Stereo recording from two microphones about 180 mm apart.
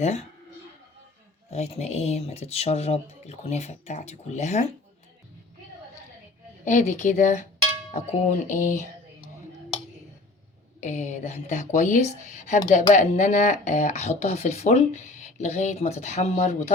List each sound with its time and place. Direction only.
1.5 s speech: 35° left (ahead or behind)
6.7 s speech: 40° left (ahead or behind)
10.8 s speech: 40° left (ahead or behind)